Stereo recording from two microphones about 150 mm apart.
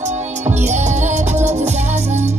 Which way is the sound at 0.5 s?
50° right (ahead or behind).